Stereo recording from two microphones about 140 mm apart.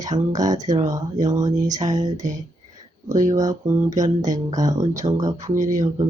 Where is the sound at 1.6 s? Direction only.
60° right (ahead or behind).